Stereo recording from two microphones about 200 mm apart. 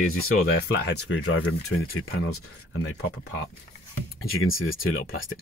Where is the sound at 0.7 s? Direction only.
60° left (ahead or behind); by 2.2 s 90° left.